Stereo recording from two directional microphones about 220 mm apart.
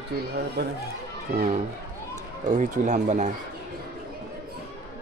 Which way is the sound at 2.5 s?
35° right (ahead or behind).